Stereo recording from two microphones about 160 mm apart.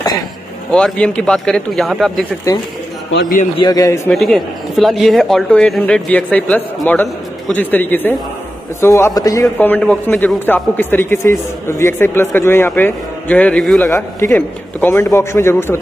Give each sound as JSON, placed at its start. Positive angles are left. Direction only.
{"t": 0.7, "sound": "a man's voice", "side_deg": 5}
{"t": 3.6, "sound": "a man's voice", "side_deg": 20}
{"t": 4.1, "sound": "a man's voice", "side_deg": 0}
{"t": 9.7, "sound": "a man's voice", "side_deg": 10}
{"t": 13.8, "sound": "a man's voice", "side_deg": 15}